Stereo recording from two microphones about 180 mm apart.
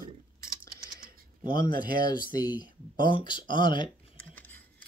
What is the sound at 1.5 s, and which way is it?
Speech, 25° left (ahead or behind).